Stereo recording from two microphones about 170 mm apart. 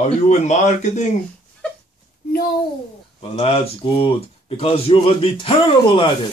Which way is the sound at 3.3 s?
35° left (ahead or behind).